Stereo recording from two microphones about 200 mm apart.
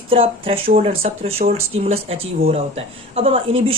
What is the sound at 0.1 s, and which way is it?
Speech, 30° right (ahead or behind).